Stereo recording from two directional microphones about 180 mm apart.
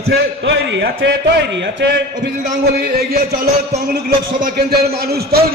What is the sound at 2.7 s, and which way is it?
A man's voice, 60° right (ahead or behind).